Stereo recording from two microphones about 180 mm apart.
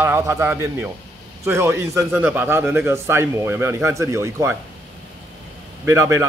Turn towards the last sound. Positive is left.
turn(degrees=-15)  # may be behind; listen again after turning